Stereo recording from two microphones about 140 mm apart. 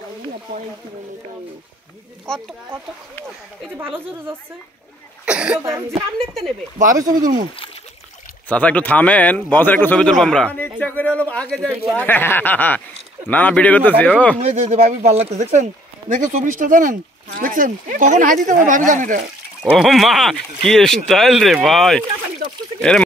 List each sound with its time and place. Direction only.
2.2 s speech: 5° left (ahead or behind)
5.2 s speech: 5° right (ahead or behind)
5.6 s speech: 20° right (ahead or behind)
8.5 s a man's voice: 10° left (ahead or behind)
14.4 s speech: 50° right (ahead or behind); by 19.2 s 70° right (ahead or behind)
19.7 s speech: 5° right (ahead or behind)